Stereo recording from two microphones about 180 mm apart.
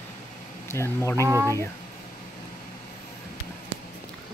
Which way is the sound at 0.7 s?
15° left (ahead or behind).